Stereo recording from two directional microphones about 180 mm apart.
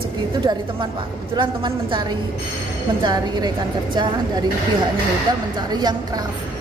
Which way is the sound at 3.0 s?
25° right (ahead or behind).